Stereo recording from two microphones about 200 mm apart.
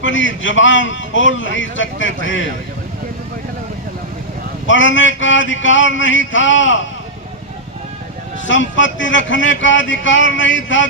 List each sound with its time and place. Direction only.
0.0 s speech: 70° left (ahead or behind)
4.6 s speech: 70° left (ahead or behind)
8.4 s speech: 70° left (ahead or behind)